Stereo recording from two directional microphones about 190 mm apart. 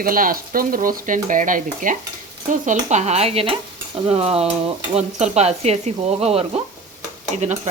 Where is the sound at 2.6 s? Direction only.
40° right (ahead or behind).